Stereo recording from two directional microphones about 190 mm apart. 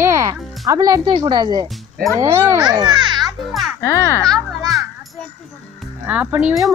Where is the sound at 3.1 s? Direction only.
Centre (ahead or behind).